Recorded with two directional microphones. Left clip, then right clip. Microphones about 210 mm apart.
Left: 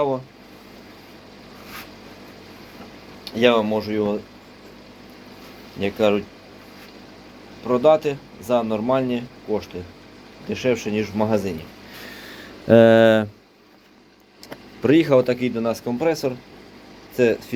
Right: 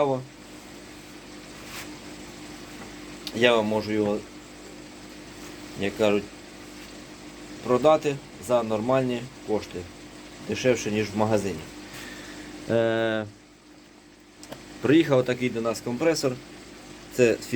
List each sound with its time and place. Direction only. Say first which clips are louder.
3.2 s speech: left 4 dB; 15° left (ahead or behind)
5.8 s speech: left 4 dB; 25° left (ahead or behind)
7.7 s speech: left 4 dB; 5° left (ahead or behind)
12.6 s speech: left 11 dB; 40° left (ahead or behind)
14.8 s speech: left 4 dB; 20° left (ahead or behind)
16.0 s speech: even; 5° left (ahead or behind)